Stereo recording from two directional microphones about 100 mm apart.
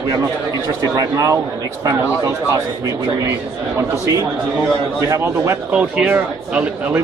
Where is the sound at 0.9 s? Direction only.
35° right (ahead or behind).